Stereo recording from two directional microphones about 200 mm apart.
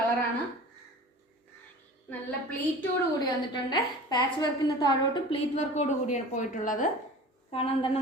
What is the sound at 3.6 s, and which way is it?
A woman's voice, 20° left (ahead or behind).